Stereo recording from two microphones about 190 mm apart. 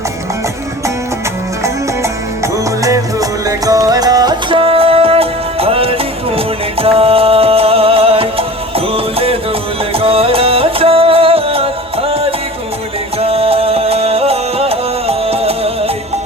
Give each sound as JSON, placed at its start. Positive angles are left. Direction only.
{"t": 2.8, "sound": "music", "side_deg": -20}